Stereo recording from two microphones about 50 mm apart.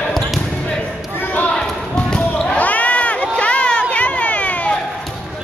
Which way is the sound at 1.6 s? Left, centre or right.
Centre.